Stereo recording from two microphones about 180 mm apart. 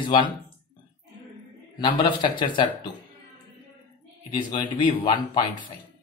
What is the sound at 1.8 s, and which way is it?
Speech, 25° left (ahead or behind).